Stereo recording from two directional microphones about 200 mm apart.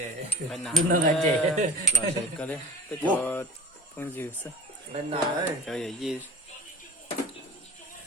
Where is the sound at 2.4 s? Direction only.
10° left (ahead or behind).